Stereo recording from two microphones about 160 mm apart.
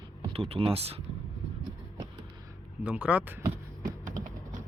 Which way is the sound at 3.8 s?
55° right (ahead or behind).